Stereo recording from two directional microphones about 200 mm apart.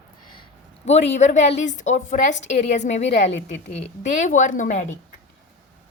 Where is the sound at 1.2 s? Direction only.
35° left (ahead or behind).